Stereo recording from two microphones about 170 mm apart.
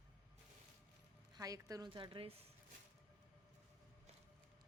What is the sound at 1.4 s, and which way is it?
A woman's voice, 20° right (ahead or behind).